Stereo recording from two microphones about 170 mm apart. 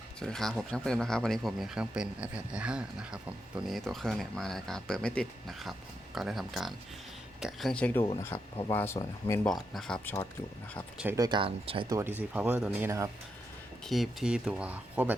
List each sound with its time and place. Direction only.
0.2 s speech: 5° left (ahead or behind)
9.5 s speech: centre (ahead or behind)
10.9 s speech: 10° right (ahead or behind)
11.2 s speech: 30° right (ahead or behind)
11.9 s speech: 15° right (ahead or behind)
13.8 s speech: centre (ahead or behind)